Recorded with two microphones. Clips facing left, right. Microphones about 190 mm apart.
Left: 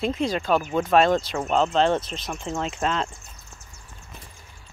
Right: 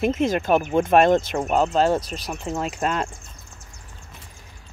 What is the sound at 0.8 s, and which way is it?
Speech, 50° right (ahead or behind).